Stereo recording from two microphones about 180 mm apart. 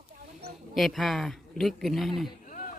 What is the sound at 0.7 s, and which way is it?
Speech, centre (ahead or behind).